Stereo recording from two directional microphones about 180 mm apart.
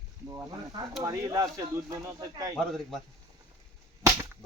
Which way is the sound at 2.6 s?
Centre (ahead or behind).